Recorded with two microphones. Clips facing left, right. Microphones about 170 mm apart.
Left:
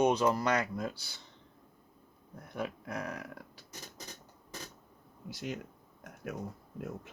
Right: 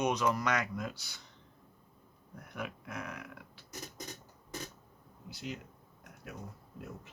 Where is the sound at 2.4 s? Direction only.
30° left (ahead or behind).